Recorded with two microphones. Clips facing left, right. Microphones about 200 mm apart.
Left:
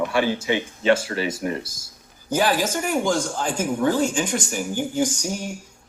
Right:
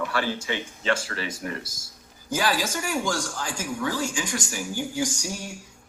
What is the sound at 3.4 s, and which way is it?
Speech, 55° left (ahead or behind).